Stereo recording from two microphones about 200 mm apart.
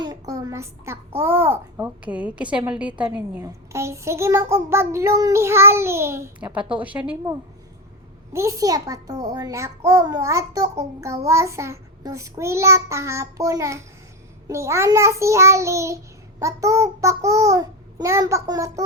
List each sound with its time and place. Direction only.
0.0 s a child's voice: 20° right (ahead or behind)
8.3 s a child's voice: 15° right (ahead or behind)